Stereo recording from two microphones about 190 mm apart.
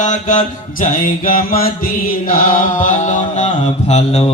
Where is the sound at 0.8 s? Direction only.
45° left (ahead or behind).